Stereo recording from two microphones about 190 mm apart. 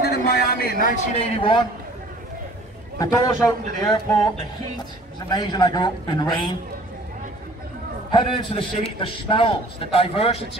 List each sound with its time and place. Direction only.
0.0 s a sound: 55° left (ahead or behind)
1.1 s a man's voice: 30° left (ahead or behind)
3.0 s a man's voice: 20° left (ahead or behind)
5.3 s a man's voice: 20° left (ahead or behind)
8.1 s a man's voice: 25° left (ahead or behind)